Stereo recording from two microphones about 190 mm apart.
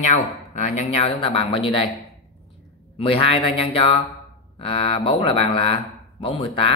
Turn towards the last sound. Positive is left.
turn(degrees=30)  # may be behind; listen again after turning